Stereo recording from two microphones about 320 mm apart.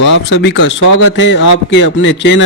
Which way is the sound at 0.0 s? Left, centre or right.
Left.